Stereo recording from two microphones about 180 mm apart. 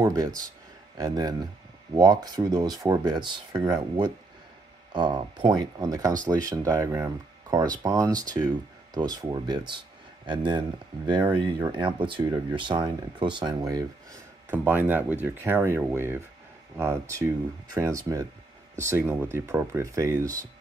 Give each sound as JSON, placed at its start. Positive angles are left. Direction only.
{"t": 0.0, "sound": "speech", "side_deg": -20}
{"t": 14.5, "sound": "speech", "side_deg": -10}